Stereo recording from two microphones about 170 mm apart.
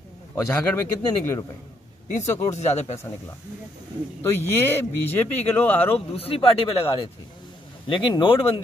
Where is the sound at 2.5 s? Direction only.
40° left (ahead or behind).